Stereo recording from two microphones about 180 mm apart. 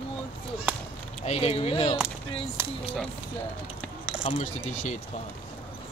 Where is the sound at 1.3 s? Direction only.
35° left (ahead or behind).